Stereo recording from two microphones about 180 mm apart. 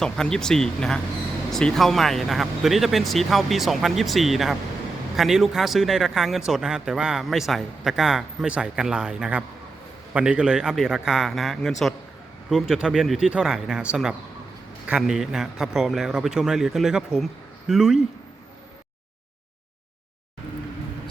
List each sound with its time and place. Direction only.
0.0 s speech: 5° left (ahead or behind)